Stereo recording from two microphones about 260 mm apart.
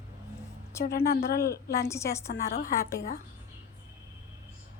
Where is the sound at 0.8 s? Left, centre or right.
Left.